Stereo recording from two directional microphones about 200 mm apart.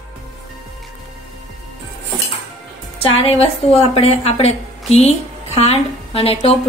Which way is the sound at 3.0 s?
30° left (ahead or behind).